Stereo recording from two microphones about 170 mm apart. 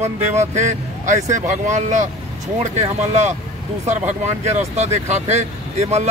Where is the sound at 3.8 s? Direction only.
45° right (ahead or behind).